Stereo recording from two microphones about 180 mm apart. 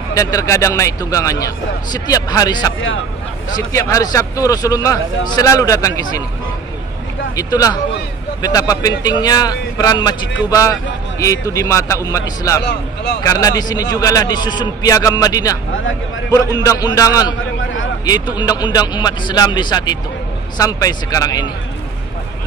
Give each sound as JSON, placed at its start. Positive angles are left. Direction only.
{"t": 0.1, "sound": "a man's voice", "side_deg": 20}
{"t": 7.3, "sound": "a man's voice", "side_deg": 20}